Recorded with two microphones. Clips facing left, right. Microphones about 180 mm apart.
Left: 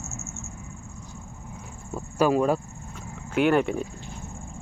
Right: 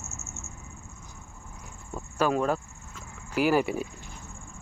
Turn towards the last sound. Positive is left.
turn(degrees=-5)  # may be behind; listen again after turning